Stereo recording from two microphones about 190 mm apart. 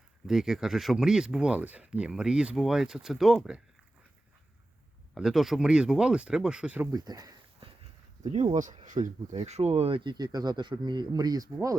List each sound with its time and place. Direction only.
0.3 s speech: centre (ahead or behind)
5.1 s speech: centre (ahead or behind)
6.9 s a sound: 20° right (ahead or behind)
8.2 s speech: 40° right (ahead or behind); by 11.8 s 20° right (ahead or behind)